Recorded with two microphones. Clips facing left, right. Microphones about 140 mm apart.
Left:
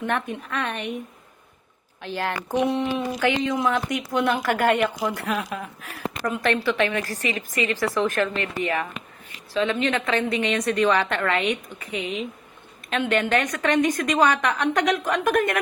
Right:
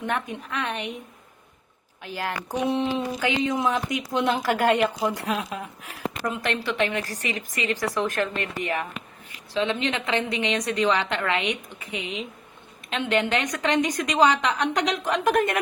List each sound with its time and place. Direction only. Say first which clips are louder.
0.0 s a woman's voice: left 2 dB; 15° right (ahead or behind)
2.0 s a woman's voice: left 3 dB; 10° right (ahead or behind)